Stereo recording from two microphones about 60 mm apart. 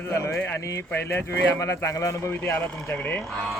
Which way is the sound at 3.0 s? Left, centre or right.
Left.